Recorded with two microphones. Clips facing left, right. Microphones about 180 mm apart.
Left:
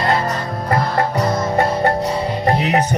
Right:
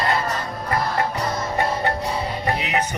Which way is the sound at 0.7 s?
45° left (ahead or behind).